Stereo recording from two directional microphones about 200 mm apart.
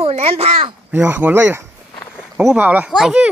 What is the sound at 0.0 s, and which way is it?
Speech, 30° right (ahead or behind).